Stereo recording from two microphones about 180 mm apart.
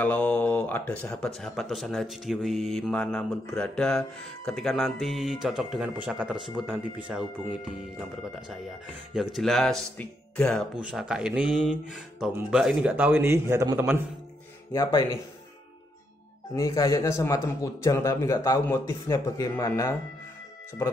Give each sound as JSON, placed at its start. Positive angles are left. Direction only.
{"t": 0.0, "sound": "speech", "side_deg": 10}
{"t": 10.8, "sound": "speech", "side_deg": -5}
{"t": 14.7, "sound": "speech", "side_deg": 20}
{"t": 16.5, "sound": "a man's voice", "side_deg": 20}